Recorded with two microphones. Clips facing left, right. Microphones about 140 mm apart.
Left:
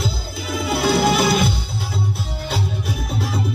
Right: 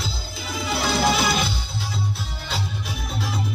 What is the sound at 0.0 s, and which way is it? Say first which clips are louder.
Music: left 6 dB; 60° left (ahead or behind).